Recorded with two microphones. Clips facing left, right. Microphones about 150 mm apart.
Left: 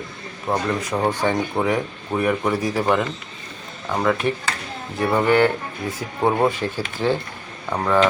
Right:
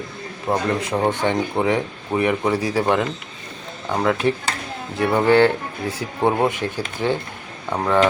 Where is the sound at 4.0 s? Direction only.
20° right (ahead or behind).